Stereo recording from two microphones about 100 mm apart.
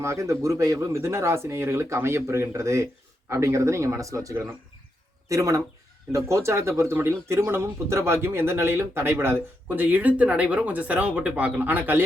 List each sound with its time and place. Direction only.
0.0 s speech: 30° right (ahead or behind)